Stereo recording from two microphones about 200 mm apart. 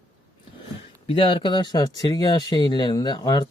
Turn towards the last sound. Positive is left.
turn(degrees=20)  # may be behind; listen again after turning